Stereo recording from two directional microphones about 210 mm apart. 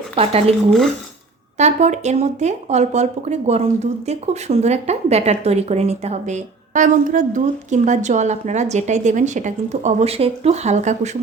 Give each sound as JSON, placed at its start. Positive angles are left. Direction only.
{"t": 0.2, "sound": "speech", "side_deg": -30}
{"t": 1.5, "sound": "speech", "side_deg": -35}